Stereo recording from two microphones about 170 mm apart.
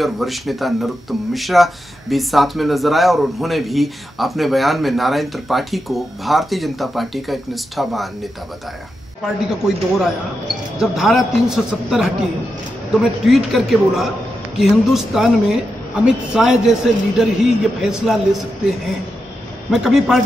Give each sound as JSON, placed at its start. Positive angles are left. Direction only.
{"t": 0.0, "sound": "speech", "side_deg": 0}
{"t": 19.7, "sound": "speech", "side_deg": 0}